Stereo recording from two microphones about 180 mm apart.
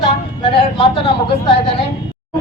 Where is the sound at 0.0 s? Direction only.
30° left (ahead or behind).